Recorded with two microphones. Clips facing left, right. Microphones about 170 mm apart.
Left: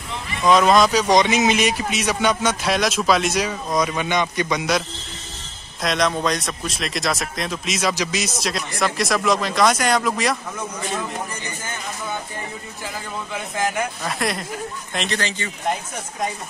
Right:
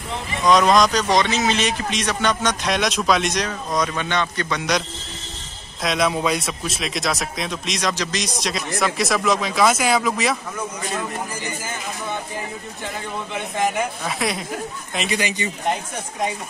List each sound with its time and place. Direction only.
0.5 s a man's voice: 5° left (ahead or behind)
5.8 s speech: 5° right (ahead or behind)
13.3 s speech: centre (ahead or behind)
15.0 s speech: 10° right (ahead or behind)